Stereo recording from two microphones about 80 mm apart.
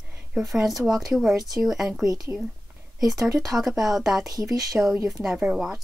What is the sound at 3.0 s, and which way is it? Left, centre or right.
Speech, centre.